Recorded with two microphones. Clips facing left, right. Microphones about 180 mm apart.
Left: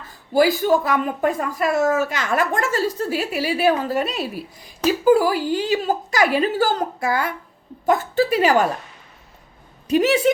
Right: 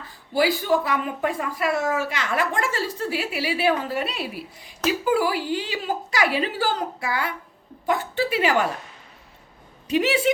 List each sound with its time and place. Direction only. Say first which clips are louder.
0.3 s a woman's voice: left 4 dB; 45° left (ahead or behind)
9.8 s a woman's voice: left 4 dB; 45° left (ahead or behind)